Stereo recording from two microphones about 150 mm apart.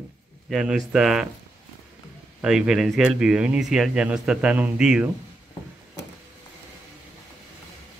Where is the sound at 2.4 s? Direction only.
5° right (ahead or behind).